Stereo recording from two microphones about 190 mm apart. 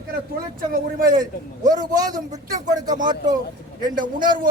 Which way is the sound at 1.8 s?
20° right (ahead or behind).